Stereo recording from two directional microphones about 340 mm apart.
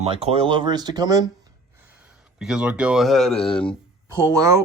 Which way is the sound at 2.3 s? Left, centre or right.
Centre.